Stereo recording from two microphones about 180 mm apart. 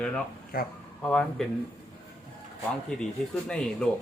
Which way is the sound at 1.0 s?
5° left (ahead or behind).